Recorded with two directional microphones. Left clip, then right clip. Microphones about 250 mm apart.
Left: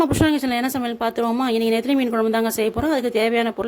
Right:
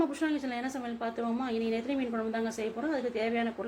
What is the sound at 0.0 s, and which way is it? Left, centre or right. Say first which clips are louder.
A woman's voice: left 12 dB; left.